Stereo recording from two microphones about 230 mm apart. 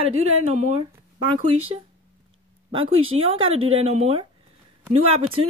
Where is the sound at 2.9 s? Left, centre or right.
Right.